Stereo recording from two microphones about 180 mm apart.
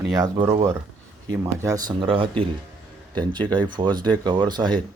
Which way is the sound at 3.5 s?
25° right (ahead or behind).